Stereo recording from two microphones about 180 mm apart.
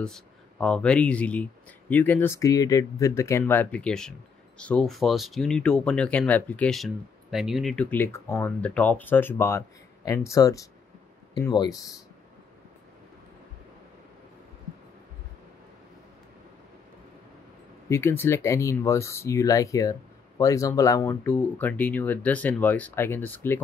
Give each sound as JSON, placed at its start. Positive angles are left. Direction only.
{"t": 0.0, "sound": "speech", "side_deg": 5}
{"t": 17.8, "sound": "speech", "side_deg": 15}